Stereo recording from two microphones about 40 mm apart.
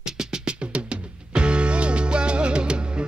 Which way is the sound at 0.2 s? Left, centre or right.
Right.